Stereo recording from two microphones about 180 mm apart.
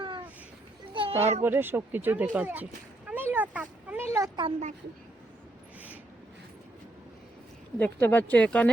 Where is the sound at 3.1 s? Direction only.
10° right (ahead or behind).